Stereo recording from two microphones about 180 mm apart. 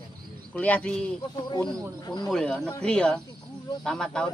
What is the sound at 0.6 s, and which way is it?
Speech, 10° left (ahead or behind).